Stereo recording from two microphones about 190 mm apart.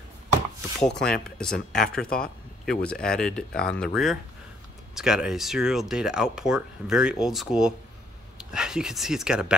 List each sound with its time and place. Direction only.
0.7 s speech: 5° left (ahead or behind)